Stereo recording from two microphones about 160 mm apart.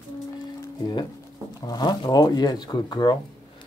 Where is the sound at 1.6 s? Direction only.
25° left (ahead or behind).